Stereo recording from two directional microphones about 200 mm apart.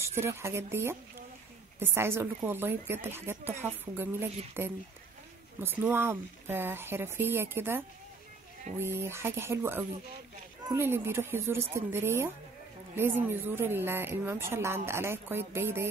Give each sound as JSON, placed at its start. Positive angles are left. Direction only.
{"t": 0.0, "sound": "a woman's voice", "side_deg": -15}